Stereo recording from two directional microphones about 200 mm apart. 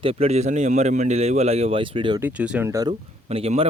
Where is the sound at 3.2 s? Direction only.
30° right (ahead or behind).